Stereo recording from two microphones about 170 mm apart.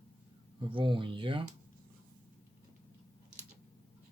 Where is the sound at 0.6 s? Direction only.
30° right (ahead or behind).